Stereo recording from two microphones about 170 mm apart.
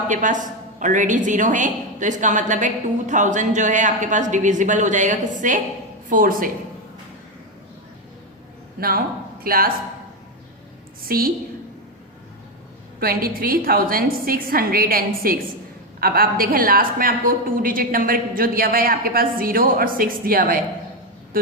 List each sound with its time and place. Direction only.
0.1 s a woman's voice: 45° right (ahead or behind)
9.4 s a woman's voice: 60° right (ahead or behind)
11.0 s a woman's voice: 60° right (ahead or behind)
13.0 s a woman's voice: 60° right (ahead or behind)